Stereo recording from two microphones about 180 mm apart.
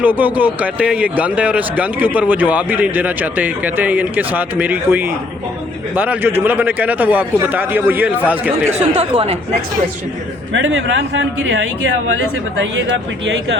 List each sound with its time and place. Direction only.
0.0 s speech: 10° right (ahead or behind)
9.0 s speech: 35° right (ahead or behind)
10.5 s speech: 85° right